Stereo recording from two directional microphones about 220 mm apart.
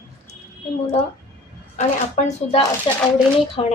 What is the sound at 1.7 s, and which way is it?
Speech, 30° left (ahead or behind).